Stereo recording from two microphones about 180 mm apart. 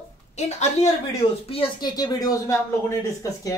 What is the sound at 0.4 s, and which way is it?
A woman's voice, 40° left (ahead or behind).